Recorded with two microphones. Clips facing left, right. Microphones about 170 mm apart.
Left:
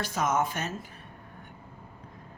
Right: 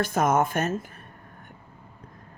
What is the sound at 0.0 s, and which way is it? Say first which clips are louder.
Speech: right 5 dB; 50° right (ahead or behind).